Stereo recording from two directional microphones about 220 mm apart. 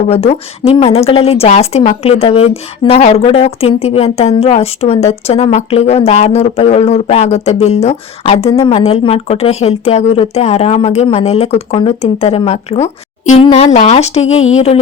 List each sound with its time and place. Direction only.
0.1 s a woman's voice: 25° left (ahead or behind)